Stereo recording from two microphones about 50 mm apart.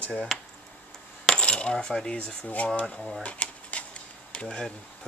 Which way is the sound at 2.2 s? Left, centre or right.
Left.